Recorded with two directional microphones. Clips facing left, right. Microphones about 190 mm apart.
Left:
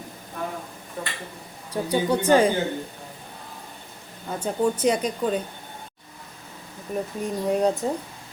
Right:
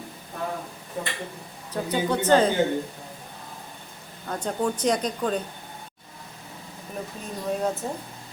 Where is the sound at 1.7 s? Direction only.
10° left (ahead or behind).